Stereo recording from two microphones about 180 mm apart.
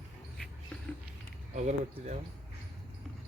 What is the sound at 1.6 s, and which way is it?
Speech, 40° right (ahead or behind).